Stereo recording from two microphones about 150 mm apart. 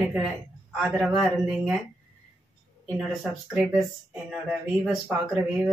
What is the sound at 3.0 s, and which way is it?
Speech, centre (ahead or behind).